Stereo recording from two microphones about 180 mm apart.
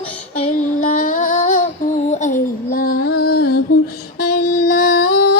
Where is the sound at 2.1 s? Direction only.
45° left (ahead or behind).